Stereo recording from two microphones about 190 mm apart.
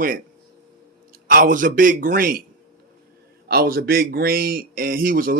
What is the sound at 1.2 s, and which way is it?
Speech, 45° right (ahead or behind).